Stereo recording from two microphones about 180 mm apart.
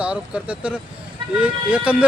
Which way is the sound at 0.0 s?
5° right (ahead or behind).